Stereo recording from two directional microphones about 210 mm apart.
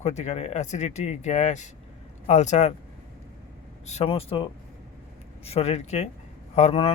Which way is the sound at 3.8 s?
30° left (ahead or behind).